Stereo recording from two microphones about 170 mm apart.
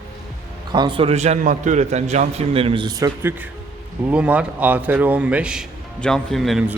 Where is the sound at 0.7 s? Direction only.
25° right (ahead or behind).